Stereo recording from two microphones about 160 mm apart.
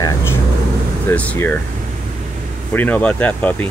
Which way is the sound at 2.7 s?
10° left (ahead or behind).